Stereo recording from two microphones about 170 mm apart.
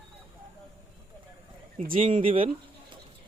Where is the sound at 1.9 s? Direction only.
35° right (ahead or behind).